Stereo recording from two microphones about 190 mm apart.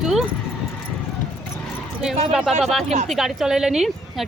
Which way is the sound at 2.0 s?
Centre (ahead or behind).